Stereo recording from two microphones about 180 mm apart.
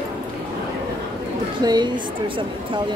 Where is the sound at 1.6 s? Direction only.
25° right (ahead or behind).